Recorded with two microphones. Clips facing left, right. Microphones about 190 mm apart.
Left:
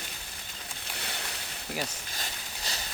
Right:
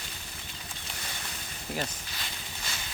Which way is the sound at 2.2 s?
40° left (ahead or behind).